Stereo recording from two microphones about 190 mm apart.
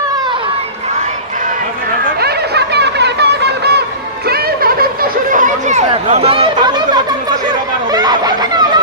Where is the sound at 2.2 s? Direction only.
55° right (ahead or behind).